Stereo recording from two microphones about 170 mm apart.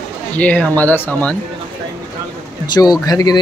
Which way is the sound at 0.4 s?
10° left (ahead or behind).